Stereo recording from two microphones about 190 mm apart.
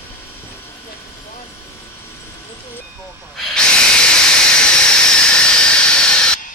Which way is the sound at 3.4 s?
5° left (ahead or behind).